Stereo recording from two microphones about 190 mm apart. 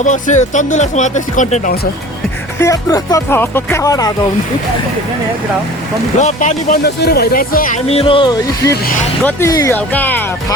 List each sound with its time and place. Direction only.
0.0 s speech: 40° left (ahead or behind)
2.6 s speech: 15° left (ahead or behind)
6.1 s speech: 35° left (ahead or behind)
6.8 s speech: 55° left (ahead or behind)
7.9 s speech: 30° left (ahead or behind); by 10.2 s 10° left (ahead or behind)